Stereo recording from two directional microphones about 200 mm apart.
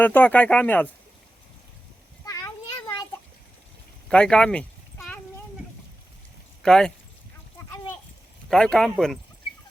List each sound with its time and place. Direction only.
0.0 s speech: 10° left (ahead or behind)
2.2 s children playing: 15° left (ahead or behind)
4.1 s a sound: 5° left (ahead or behind)
6.6 s speech: 5° left (ahead or behind)
8.4 s a man's voice: 5° left (ahead or behind)